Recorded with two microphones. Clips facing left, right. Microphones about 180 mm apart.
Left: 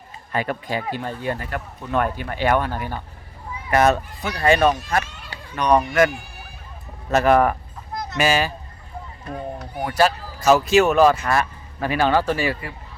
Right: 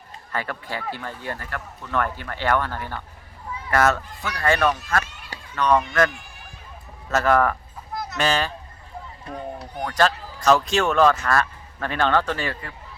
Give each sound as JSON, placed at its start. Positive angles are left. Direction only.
{"t": 0.3, "sound": "speech", "side_deg": 15}
{"t": 7.1, "sound": "speech", "side_deg": 15}
{"t": 9.7, "sound": "speech", "side_deg": 10}